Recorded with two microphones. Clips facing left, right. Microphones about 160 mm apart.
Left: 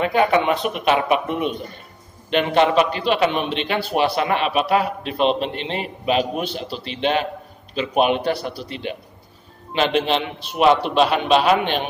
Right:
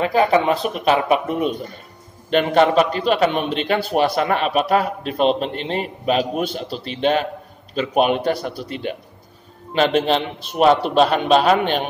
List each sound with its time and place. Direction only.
0.0 s a man's voice: 35° right (ahead or behind)